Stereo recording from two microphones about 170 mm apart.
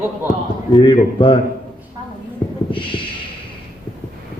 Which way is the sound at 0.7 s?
30° left (ahead or behind).